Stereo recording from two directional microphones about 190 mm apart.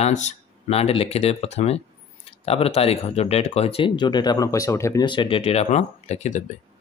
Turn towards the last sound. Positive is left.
turn(degrees=40)  # may be behind; listen again after turning